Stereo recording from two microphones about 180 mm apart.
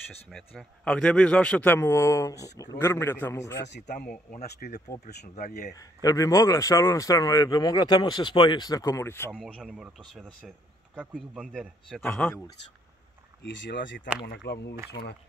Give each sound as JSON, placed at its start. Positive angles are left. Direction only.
{"t": 0.3, "sound": "a man's voice", "side_deg": 5}
{"t": 4.3, "sound": "speech", "side_deg": 60}
{"t": 5.8, "sound": "a man's voice", "side_deg": 20}
{"t": 9.3, "sound": "a man's voice", "side_deg": 0}
{"t": 13.4, "sound": "speech", "side_deg": 80}
{"t": 14.2, "sound": "speech", "side_deg": 65}